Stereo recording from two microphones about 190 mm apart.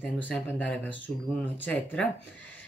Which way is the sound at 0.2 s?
5° left (ahead or behind).